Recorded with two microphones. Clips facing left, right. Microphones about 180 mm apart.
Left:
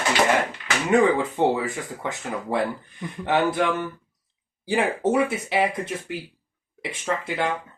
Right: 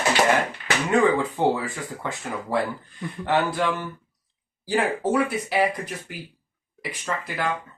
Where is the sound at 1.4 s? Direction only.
20° left (ahead or behind).